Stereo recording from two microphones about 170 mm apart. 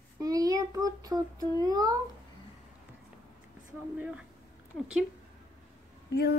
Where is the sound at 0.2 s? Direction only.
20° right (ahead or behind).